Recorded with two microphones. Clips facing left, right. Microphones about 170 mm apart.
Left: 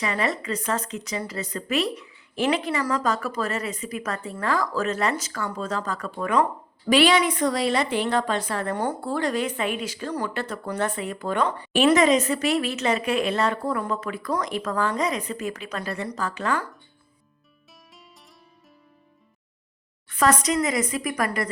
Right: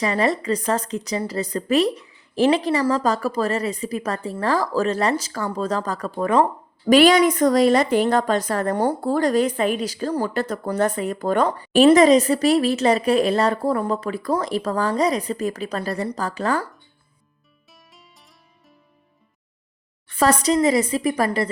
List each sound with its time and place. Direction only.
0.0 s a woman's voice: 35° right (ahead or behind)
6.8 s a woman's voice: 45° right (ahead or behind)
17.7 s music: centre (ahead or behind)
20.1 s a woman's voice: 30° right (ahead or behind)